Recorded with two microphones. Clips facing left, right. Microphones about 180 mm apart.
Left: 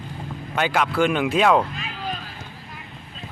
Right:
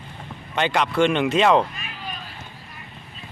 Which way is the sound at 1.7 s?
90° left.